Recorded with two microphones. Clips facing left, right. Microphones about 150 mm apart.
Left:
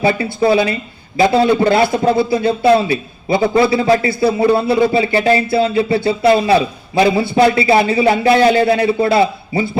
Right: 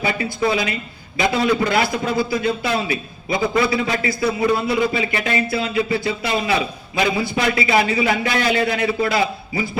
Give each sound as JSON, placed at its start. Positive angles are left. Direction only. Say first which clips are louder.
{"t": 0.0, "sound": "a man's voice", "louder": "left 6 dB", "side_deg": 30}